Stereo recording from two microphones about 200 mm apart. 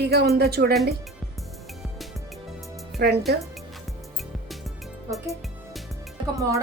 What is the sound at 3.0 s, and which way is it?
Speech, 50° right (ahead or behind).